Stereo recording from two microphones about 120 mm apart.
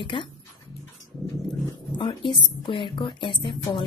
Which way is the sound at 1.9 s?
40° left (ahead or behind).